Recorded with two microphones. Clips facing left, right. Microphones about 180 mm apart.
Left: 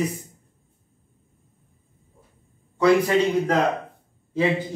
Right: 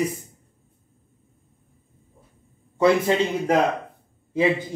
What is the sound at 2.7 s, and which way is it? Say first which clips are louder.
Speech: left 1 dB; 25° right (ahead or behind).